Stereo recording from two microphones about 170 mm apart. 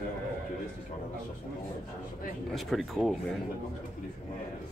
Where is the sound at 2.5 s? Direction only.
Centre (ahead or behind).